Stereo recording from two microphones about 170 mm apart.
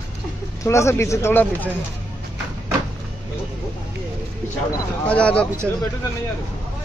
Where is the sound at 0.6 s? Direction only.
15° left (ahead or behind).